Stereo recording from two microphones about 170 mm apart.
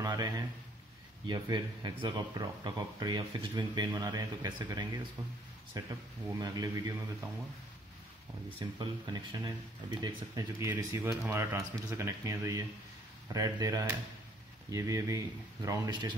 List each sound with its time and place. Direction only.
0.0 s a sound: 25° right (ahead or behind)
1.2 s speech: 25° right (ahead or behind)
8.5 s speech: 30° right (ahead or behind)